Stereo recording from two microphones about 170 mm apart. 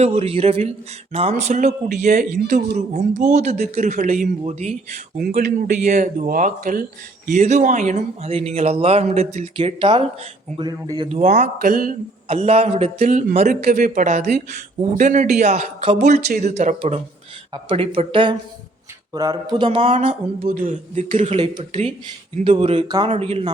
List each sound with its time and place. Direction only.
0.0 s speech: 35° right (ahead or behind)
5.1 s speech: 55° right (ahead or behind); by 11.1 s 25° right (ahead or behind)
11.1 s speech: 45° right (ahead or behind)
11.6 s speech: 60° right (ahead or behind)
12.3 s speech: 35° right (ahead or behind)
13.7 s speech: 60° right (ahead or behind); by 23.1 s 25° right (ahead or behind)
23.1 s speech: 35° right (ahead or behind)